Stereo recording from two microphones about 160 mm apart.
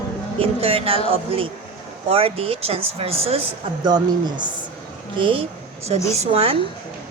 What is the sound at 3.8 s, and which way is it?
Speech, 25° right (ahead or behind).